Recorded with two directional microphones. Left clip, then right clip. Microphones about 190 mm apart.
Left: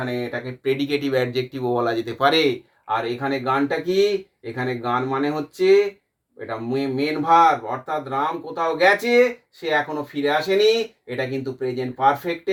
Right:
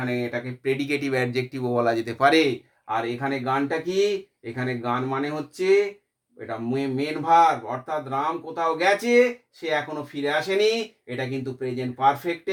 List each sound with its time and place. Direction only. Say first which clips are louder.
0.1 s speech: left 1 dB; 20° right (ahead or behind)